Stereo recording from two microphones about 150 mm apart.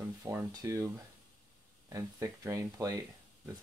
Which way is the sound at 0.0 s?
15° right (ahead or behind).